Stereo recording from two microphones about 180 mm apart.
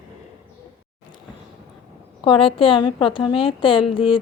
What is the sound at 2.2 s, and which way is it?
A woman's voice, 30° left (ahead or behind).